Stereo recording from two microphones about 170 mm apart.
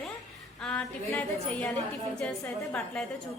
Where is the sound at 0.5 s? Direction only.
5° left (ahead or behind).